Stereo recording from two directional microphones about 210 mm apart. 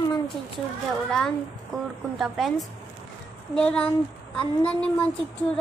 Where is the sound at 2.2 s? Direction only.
Centre (ahead or behind).